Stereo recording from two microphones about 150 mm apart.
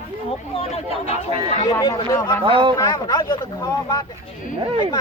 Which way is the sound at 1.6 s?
25° left (ahead or behind).